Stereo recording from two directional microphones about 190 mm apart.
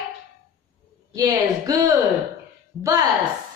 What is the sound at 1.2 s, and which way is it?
A woman's voice, 20° right (ahead or behind).